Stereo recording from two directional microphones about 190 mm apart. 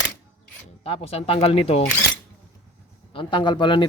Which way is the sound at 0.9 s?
30° left (ahead or behind).